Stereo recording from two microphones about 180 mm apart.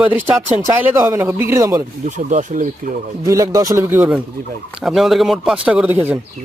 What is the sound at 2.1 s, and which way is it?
Speech, 45° right (ahead or behind).